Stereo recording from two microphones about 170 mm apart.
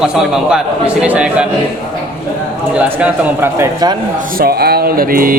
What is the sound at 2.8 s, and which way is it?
Speech, 10° right (ahead or behind).